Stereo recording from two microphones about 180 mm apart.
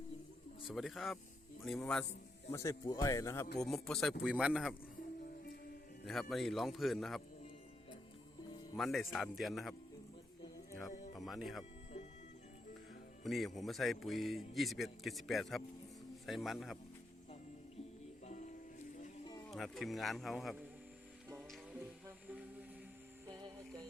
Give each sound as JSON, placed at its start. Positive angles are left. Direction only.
{"t": 0.7, "sound": "a man's voice", "side_deg": 0}
{"t": 2.5, "sound": "speech", "side_deg": 15}
{"t": 3.6, "sound": "a man's voice", "side_deg": 5}
{"t": 6.1, "sound": "a man's voice", "side_deg": 0}
{"t": 8.8, "sound": "a man's voice", "side_deg": 0}
{"t": 11.1, "sound": "music", "side_deg": 0}
{"t": 13.2, "sound": "a man's voice", "side_deg": 0}
{"t": 18.3, "sound": "music", "side_deg": 45}
{"t": 19.5, "sound": "a man's voice", "side_deg": 0}
{"t": 21.5, "sound": "music", "side_deg": -10}
{"t": 23.2, "sound": "music", "side_deg": -20}